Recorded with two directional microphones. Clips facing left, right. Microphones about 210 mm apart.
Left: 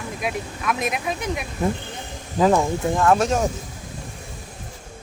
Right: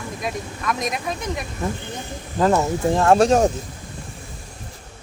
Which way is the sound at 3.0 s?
30° right (ahead or behind).